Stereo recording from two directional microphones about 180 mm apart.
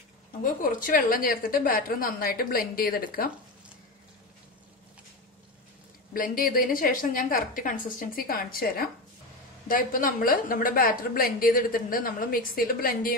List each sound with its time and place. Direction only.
0.4 s a woman's voice: 50° left (ahead or behind)
6.1 s a woman's voice: 50° left (ahead or behind)